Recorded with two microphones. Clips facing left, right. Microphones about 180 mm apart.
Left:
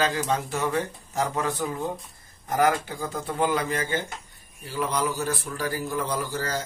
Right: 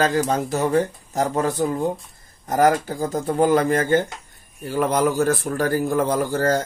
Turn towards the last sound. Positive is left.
turn(degrees=-50)  # may be behind; listen again after turning